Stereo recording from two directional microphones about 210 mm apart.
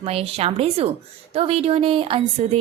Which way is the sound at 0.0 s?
30° right (ahead or behind).